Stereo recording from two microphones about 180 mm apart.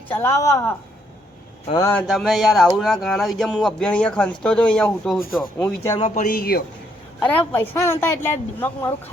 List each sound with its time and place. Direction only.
0.1 s speech: 15° left (ahead or behind)
1.7 s speech: 10° left (ahead or behind)
6.0 s speech: 45° left (ahead or behind)
7.2 s speech: 10° left (ahead or behind)